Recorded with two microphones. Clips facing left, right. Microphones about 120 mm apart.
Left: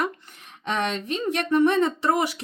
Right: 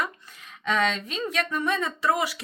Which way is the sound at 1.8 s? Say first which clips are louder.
Left 4 dB; 25° left (ahead or behind).